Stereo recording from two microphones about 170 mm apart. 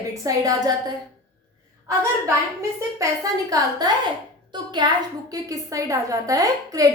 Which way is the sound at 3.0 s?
20° right (ahead or behind).